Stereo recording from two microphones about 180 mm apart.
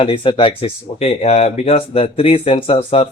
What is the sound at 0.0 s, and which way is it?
Speech, 30° left (ahead or behind).